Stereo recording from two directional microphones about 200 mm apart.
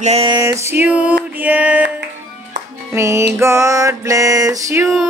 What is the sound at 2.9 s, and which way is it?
Music, 15° right (ahead or behind).